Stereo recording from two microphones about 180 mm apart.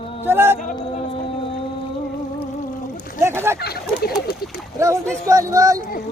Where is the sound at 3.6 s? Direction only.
60° left (ahead or behind).